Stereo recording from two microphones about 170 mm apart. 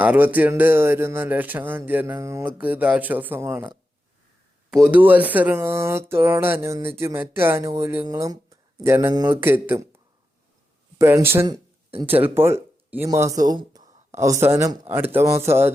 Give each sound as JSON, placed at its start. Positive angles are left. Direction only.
{"t": 0.0, "sound": "speech", "side_deg": -10}
{"t": 10.9, "sound": "speech", "side_deg": -15}
{"t": 11.4, "sound": "a sound", "side_deg": -30}
{"t": 12.0, "sound": "speech", "side_deg": -10}